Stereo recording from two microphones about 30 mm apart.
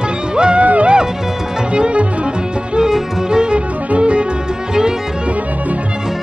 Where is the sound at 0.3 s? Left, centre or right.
Right.